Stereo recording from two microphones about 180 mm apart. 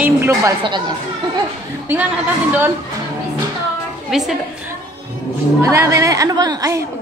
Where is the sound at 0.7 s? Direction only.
25° right (ahead or behind).